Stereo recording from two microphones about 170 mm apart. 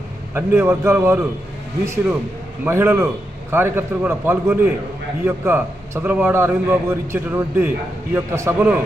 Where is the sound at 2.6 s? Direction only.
15° right (ahead or behind).